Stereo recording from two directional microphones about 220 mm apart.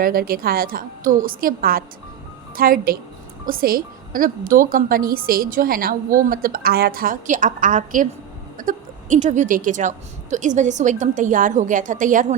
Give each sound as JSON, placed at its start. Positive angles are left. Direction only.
{"t": 0.0, "sound": "a woman's voice", "side_deg": -40}